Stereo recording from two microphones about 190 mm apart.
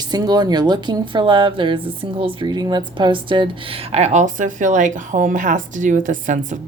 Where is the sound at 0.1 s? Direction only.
20° right (ahead or behind).